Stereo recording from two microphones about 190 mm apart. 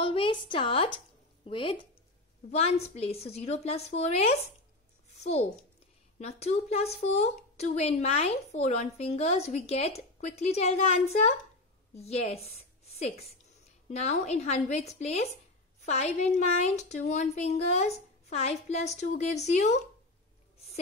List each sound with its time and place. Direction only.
0.0 s a woman's voice: 25° left (ahead or behind)